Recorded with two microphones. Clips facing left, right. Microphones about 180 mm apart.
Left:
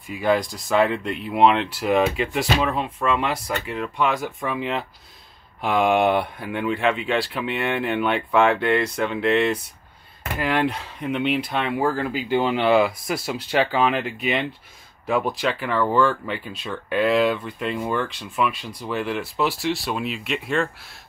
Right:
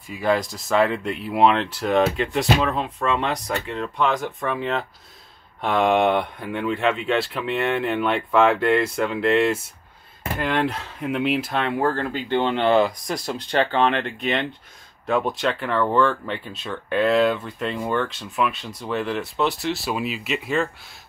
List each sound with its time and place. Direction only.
0.1 s speech: centre (ahead or behind)